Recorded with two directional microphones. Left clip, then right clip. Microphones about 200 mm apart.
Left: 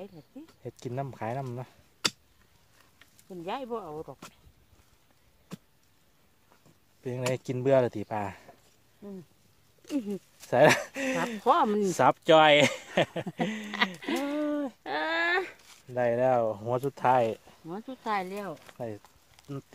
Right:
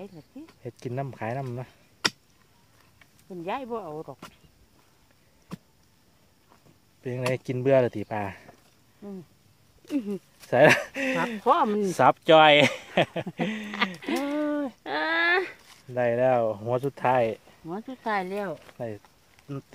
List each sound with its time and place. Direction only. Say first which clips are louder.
0.6 s speech: right 2 dB; 5° left (ahead or behind)
3.3 s speech: right 3 dB; 15° left (ahead or behind)
7.0 s speech: right 3 dB; 5° left (ahead or behind)
11.4 s speech: right 1 dB; 25° left (ahead or behind)
11.9 s speech: right 4 dB; 5° left (ahead or behind)
13.8 s a sound: right 5 dB; 15° left (ahead or behind)
15.9 s speech: right 2 dB; 5° left (ahead or behind)
17.6 s speech: right 3 dB; centre (ahead or behind); by 18.6 s 15° right (ahead or behind)
19.4 s a sound: right 2 dB; 25° left (ahead or behind)